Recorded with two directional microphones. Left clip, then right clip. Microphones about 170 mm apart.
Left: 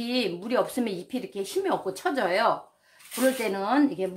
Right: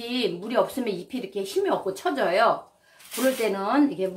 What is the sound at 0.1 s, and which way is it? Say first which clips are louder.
Speech: right 1 dB; 35° left (ahead or behind).